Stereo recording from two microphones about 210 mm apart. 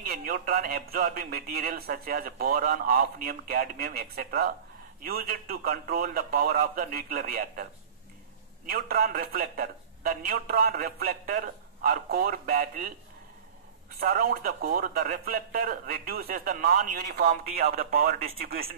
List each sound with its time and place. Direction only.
0.0 s a man's voice: 45° right (ahead or behind)
8.6 s a man's voice: 45° right (ahead or behind)
13.9 s a man's voice: 45° right (ahead or behind)